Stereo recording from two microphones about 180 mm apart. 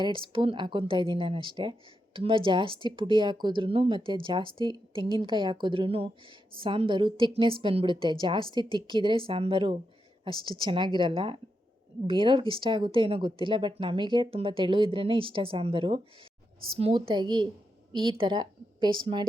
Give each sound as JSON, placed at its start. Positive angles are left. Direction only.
{"t": 0.0, "sound": "speech", "side_deg": -30}